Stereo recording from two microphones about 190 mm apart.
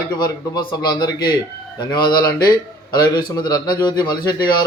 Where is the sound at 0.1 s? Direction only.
20° left (ahead or behind).